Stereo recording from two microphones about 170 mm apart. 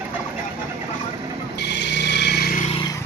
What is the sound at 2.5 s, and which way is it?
Vehicle, 45° left (ahead or behind).